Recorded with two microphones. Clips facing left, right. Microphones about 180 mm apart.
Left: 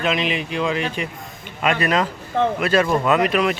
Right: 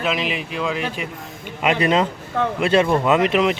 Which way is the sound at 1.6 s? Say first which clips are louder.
Right 2 dB; 20° right (ahead or behind).